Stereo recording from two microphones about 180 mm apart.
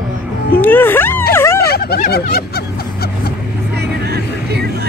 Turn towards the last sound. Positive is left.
turn(degrees=-65)  # may be behind; listen again after turning